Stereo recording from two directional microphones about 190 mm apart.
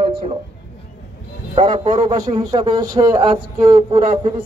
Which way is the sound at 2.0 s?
20° right (ahead or behind).